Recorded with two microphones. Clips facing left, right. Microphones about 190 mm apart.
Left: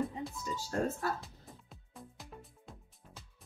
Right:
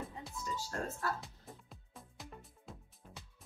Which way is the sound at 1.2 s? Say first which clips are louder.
Even; centre (ahead or behind).